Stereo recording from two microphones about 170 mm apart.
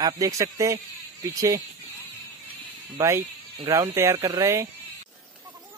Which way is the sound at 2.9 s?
20° right (ahead or behind).